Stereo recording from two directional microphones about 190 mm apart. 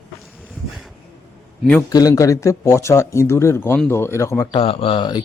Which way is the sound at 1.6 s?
5° left (ahead or behind).